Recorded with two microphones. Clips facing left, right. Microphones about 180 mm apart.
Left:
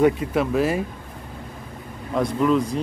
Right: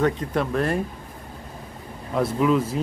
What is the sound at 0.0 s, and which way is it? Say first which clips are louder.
Speech: left 4 dB; 5° left (ahead or behind).